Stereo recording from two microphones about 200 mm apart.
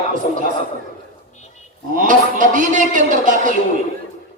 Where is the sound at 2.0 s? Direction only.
40° right (ahead or behind).